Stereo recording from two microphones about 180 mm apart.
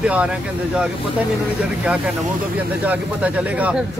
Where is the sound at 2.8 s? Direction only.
10° right (ahead or behind).